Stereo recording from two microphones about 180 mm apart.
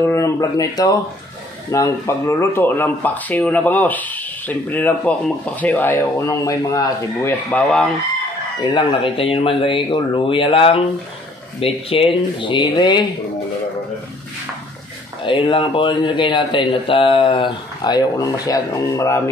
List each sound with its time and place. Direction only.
0.0 s speech: 15° left (ahead or behind)
7.5 s speech: centre (ahead or behind)
8.6 s speech: 25° left (ahead or behind)
15.2 s speech: 30° left (ahead or behind)